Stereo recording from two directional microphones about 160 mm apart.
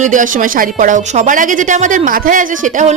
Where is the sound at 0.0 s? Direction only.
55° right (ahead or behind).